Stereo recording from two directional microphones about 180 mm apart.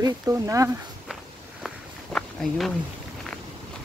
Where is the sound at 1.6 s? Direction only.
Centre (ahead or behind).